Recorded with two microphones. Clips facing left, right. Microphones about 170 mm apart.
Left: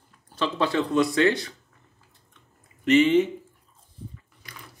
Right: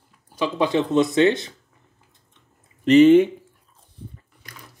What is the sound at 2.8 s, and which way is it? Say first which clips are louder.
Speech: right 6 dB; 35° right (ahead or behind).